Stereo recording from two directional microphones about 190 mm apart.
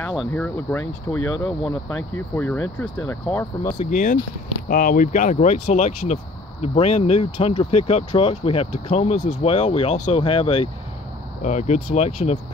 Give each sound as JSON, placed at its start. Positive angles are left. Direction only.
{"t": 0.3, "sound": "speech", "side_deg": 10}
{"t": 3.9, "sound": "speech", "side_deg": 45}